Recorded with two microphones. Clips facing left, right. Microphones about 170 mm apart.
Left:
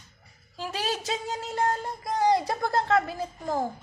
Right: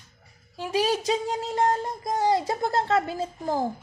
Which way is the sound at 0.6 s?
15° right (ahead or behind).